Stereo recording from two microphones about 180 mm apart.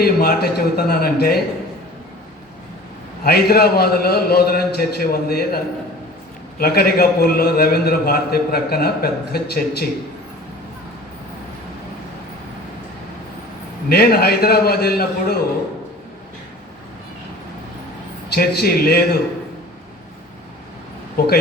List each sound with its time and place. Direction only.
0.0 s a man's voice: 60° left (ahead or behind)
3.2 s a man's voice: 60° left (ahead or behind)
6.6 s a man's voice: 60° left (ahead or behind)
13.9 s a man's voice: 60° left (ahead or behind)
18.3 s a man's voice: 60° left (ahead or behind)
21.2 s a man's voice: 60° left (ahead or behind)